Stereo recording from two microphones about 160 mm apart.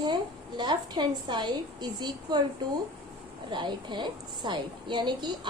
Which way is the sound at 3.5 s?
30° right (ahead or behind).